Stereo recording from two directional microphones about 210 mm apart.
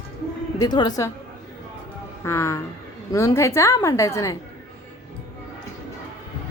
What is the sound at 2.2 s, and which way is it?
A woman's voice, 15° left (ahead or behind).